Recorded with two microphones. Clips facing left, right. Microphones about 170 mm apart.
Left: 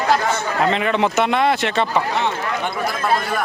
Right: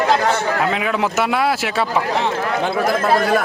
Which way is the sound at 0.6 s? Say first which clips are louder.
Left 1 dB; 5° right (ahead or behind).